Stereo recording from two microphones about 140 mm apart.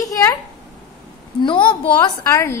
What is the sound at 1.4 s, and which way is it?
Speech, 35° left (ahead or behind).